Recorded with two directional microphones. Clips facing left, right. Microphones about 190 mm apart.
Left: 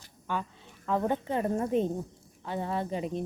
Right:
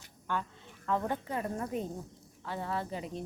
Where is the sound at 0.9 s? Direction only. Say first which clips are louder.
Left 4 dB; 15° left (ahead or behind).